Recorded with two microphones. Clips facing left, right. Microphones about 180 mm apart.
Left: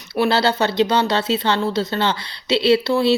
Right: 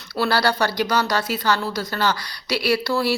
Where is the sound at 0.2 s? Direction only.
25° left (ahead or behind).